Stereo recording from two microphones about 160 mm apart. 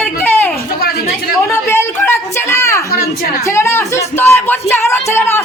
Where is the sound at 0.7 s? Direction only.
70° left (ahead or behind).